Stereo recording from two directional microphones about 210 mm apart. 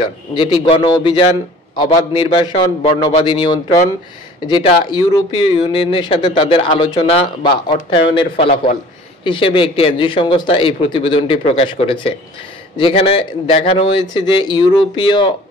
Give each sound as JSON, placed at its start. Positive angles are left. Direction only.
{"t": 0.4, "sound": "speech", "side_deg": 20}